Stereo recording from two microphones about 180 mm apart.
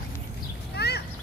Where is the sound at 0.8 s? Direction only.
65° left (ahead or behind).